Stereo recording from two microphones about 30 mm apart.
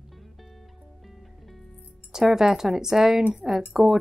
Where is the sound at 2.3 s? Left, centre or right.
Centre.